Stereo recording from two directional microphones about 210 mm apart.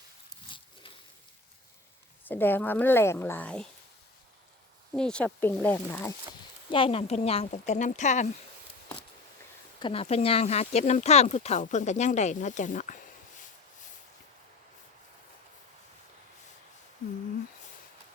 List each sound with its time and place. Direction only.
0.5 s pig: 25° left (ahead or behind)
2.2 s a woman's voice: 10° left (ahead or behind)
4.9 s a woman's voice: 5° left (ahead or behind)
6.7 s speech: 25° left (ahead or behind)
9.8 s speech: 25° left (ahead or behind)